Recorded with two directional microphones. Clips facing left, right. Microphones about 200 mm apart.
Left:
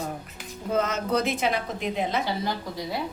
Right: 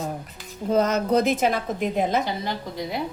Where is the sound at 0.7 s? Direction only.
40° right (ahead or behind).